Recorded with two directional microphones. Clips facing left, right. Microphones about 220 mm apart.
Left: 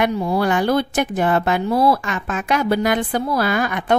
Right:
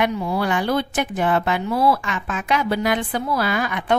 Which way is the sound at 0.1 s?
40° left (ahead or behind).